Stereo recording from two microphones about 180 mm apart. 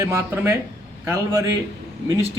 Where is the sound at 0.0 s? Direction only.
15° right (ahead or behind).